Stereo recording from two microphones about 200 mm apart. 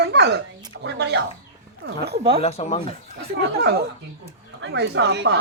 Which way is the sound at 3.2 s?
55° right (ahead or behind).